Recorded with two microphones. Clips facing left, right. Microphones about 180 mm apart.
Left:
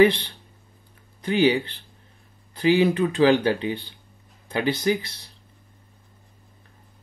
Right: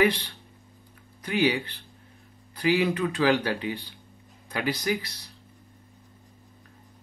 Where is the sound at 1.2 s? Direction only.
30° left (ahead or behind).